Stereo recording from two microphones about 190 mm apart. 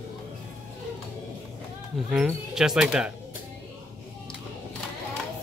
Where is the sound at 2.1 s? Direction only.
5° right (ahead or behind).